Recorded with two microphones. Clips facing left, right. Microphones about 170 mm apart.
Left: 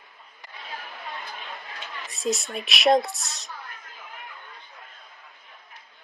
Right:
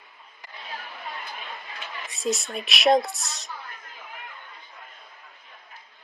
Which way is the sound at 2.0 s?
Centre (ahead or behind).